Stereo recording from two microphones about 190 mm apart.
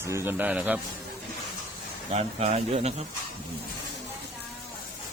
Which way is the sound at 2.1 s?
35° right (ahead or behind).